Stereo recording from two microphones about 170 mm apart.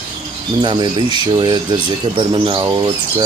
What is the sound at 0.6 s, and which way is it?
Speech, 25° right (ahead or behind).